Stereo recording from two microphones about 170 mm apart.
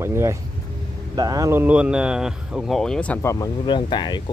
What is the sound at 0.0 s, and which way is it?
Speech, 15° right (ahead or behind).